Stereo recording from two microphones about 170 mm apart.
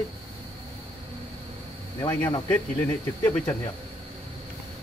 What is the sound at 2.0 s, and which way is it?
Speech, 15° left (ahead or behind).